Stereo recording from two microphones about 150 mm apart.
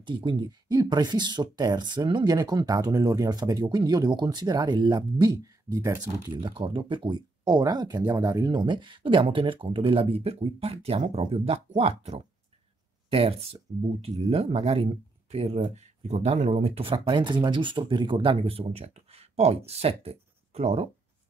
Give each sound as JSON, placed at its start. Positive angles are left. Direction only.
{"t": 0.0, "sound": "speech", "side_deg": -35}
{"t": 6.4, "sound": "speech", "side_deg": -35}